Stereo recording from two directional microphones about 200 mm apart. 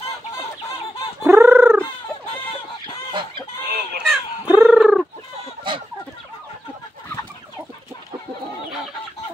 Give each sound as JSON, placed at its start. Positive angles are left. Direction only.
{"t": 1.2, "sound": "fowl", "side_deg": -10}
{"t": 3.1, "sound": "chicken", "side_deg": -25}
{"t": 3.6, "sound": "chicken", "side_deg": -50}
{"t": 4.1, "sound": "cat", "side_deg": -5}